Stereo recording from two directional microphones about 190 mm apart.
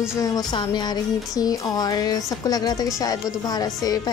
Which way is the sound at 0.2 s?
20° left (ahead or behind).